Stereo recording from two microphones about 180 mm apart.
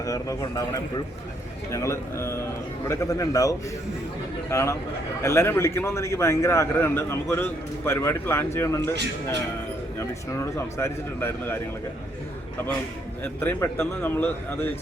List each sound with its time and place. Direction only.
0.0 s a man's voice: 20° left (ahead or behind)
10.0 s a man's voice: 15° left (ahead or behind)
13.2 s a man's voice: 15° left (ahead or behind)